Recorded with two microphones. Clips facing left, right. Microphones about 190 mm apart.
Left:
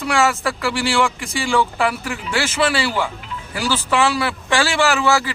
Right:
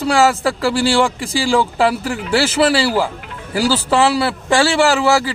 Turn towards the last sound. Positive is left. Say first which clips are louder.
# right 3 dB
turn(degrees=-30)  # may be behind; listen again after turning